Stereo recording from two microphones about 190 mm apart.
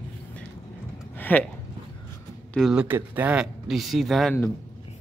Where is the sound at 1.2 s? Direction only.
10° left (ahead or behind).